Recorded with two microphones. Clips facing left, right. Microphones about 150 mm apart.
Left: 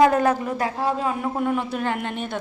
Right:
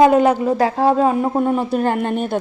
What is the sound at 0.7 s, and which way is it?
A woman's voice, 40° right (ahead or behind).